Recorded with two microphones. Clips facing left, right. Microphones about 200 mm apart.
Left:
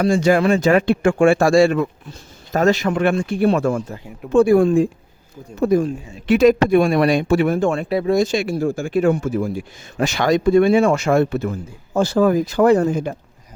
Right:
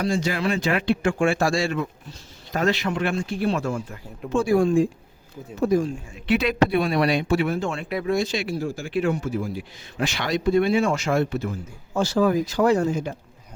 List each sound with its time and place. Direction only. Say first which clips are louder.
0.0 s speech: left 8 dB; 50° left (ahead or behind)
2.5 s speech: left 6 dB; 45° left (ahead or behind)
7.9 s speech: left 6 dB; 30° left (ahead or behind)
8.2 s speech: left 7 dB; 45° left (ahead or behind)